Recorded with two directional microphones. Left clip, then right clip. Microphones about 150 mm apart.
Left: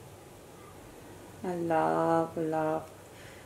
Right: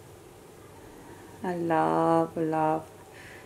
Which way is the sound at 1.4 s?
35° right (ahead or behind).